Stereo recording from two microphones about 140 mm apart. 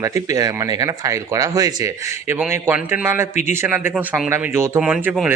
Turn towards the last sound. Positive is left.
turn(degrees=-5)  # may be behind; listen again after turning